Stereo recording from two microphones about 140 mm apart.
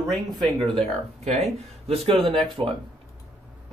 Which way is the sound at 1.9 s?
40° right (ahead or behind).